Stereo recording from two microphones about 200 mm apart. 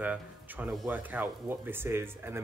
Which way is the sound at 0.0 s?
10° right (ahead or behind).